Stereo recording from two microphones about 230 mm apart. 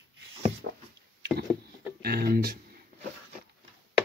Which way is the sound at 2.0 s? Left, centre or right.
Right.